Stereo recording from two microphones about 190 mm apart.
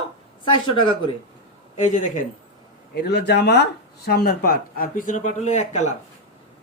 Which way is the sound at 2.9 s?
60° left (ahead or behind).